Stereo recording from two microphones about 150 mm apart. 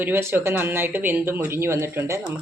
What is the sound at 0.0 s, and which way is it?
Speech, 15° right (ahead or behind).